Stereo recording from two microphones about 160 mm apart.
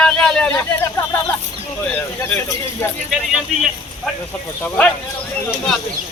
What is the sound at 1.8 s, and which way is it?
Speech, 10° left (ahead or behind).